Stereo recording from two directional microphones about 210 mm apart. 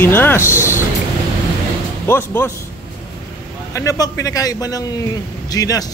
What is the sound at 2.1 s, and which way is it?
Speech, 10° left (ahead or behind).